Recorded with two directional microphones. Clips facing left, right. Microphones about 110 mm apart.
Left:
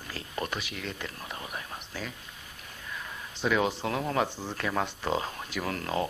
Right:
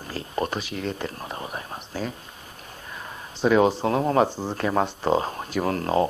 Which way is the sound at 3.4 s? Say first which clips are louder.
Right 8 dB; 35° right (ahead or behind).